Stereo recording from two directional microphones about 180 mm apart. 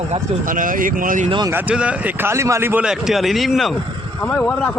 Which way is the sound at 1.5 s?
5° right (ahead or behind).